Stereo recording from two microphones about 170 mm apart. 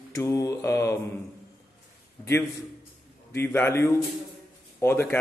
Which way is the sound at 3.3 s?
15° left (ahead or behind).